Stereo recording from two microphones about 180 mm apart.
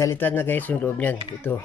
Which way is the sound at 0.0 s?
10° left (ahead or behind).